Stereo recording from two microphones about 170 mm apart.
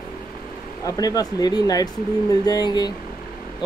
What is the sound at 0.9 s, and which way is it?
Speech, 20° left (ahead or behind).